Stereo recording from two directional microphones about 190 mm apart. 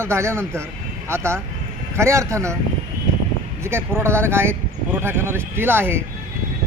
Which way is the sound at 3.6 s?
15° right (ahead or behind).